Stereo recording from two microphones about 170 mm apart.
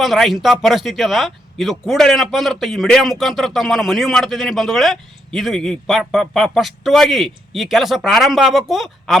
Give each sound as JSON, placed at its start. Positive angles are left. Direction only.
{"t": 0.0, "sound": "speech", "side_deg": 0}